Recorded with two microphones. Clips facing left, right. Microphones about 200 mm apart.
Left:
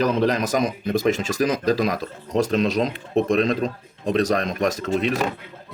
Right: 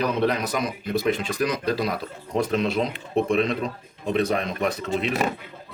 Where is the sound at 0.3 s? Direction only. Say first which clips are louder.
Left 3 dB; 90° left.